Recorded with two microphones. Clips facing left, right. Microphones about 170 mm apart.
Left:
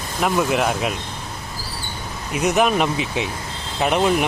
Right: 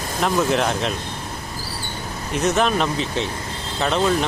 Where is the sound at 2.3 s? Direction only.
10° left (ahead or behind).